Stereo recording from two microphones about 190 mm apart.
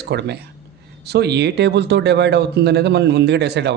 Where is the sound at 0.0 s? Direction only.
60° right (ahead or behind).